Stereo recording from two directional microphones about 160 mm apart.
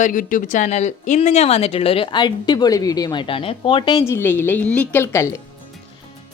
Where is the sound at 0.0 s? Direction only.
55° left (ahead or behind); by 4.0 s 30° left (ahead or behind).